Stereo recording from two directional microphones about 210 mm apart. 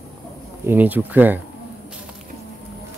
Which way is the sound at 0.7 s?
10° right (ahead or behind).